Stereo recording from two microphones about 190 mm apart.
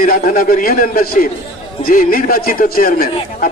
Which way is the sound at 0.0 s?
45° left (ahead or behind).